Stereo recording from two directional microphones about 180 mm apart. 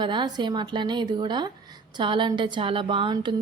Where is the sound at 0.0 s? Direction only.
25° right (ahead or behind).